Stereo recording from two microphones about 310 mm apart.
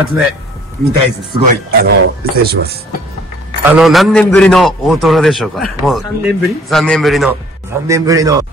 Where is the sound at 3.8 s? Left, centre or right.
Centre.